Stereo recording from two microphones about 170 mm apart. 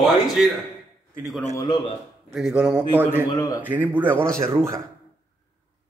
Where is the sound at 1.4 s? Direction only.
15° left (ahead or behind).